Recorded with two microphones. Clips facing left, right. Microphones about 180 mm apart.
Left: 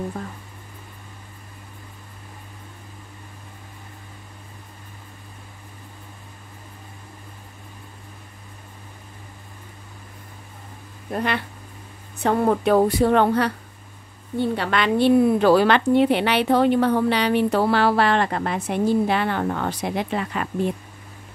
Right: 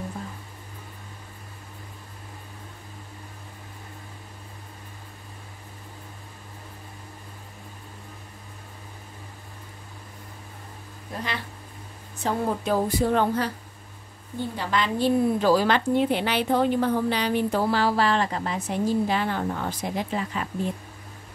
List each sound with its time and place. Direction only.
11.1 s a woman's voice: 60° left (ahead or behind)